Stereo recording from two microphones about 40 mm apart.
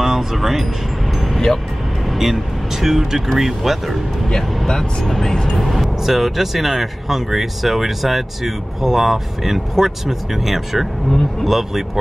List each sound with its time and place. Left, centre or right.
0.0 s music: centre
2.0 s speech: centre
5.2 s speech: centre
5.6 s speech: centre